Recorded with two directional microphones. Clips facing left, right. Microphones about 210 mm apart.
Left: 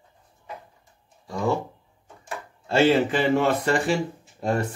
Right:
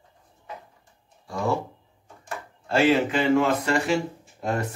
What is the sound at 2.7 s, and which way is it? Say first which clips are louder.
Speech: left 1 dB; 30° left (ahead or behind).